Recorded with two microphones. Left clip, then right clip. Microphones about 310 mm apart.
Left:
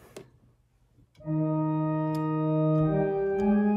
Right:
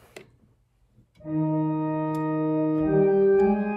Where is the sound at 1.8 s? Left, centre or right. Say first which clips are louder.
Right 2 dB; left.